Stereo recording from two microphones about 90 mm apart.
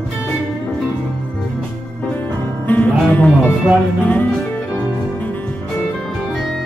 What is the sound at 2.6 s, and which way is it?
Music, 20° left (ahead or behind).